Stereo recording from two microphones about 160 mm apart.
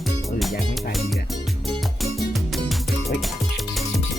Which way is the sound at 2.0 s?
Centre (ahead or behind).